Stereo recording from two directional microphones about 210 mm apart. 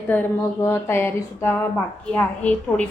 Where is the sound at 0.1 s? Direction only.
10° left (ahead or behind).